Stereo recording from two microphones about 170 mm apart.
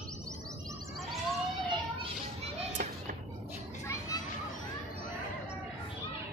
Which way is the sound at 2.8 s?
55° right (ahead or behind).